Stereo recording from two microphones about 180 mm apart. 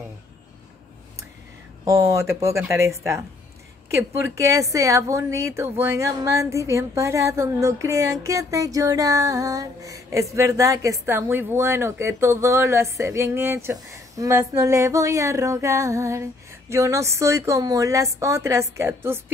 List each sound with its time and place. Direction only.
1.9 s a woman's voice: 15° right (ahead or behind)